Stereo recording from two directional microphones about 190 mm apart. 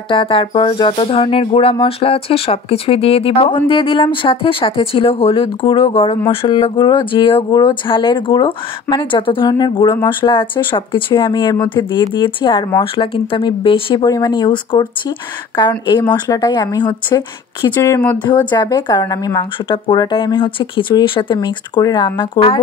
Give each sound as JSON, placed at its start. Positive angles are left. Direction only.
{"t": 0.1, "sound": "speech", "side_deg": 30}